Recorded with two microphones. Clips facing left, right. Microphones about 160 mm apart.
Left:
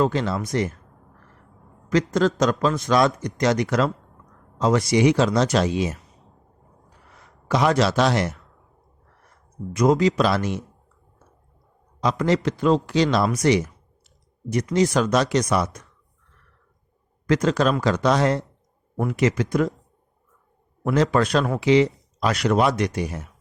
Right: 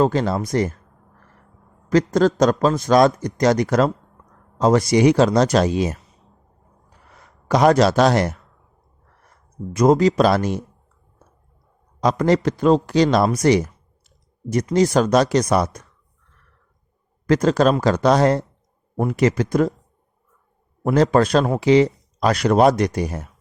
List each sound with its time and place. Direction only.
0.0 s a man's voice: 40° right (ahead or behind)
1.9 s a man's voice: 40° right (ahead or behind)
7.4 s a man's voice: 40° right (ahead or behind)
9.7 s a man's voice: 40° right (ahead or behind)
11.9 s a man's voice: 40° right (ahead or behind)
17.2 s a man's voice: 35° right (ahead or behind)
20.8 s a man's voice: 35° right (ahead or behind)